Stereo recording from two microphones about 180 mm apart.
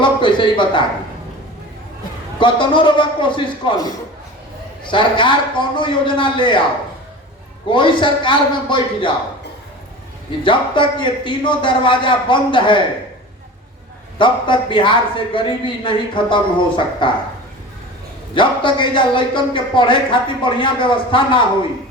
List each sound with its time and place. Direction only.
0.0 s a sound: 25° left (ahead or behind)
2.4 s speech: 25° left (ahead or behind)
7.7 s speech: 25° left (ahead or behind)
10.4 s speech: 25° left (ahead or behind)
14.2 s speech: 25° left (ahead or behind)
18.3 s speech: 25° left (ahead or behind)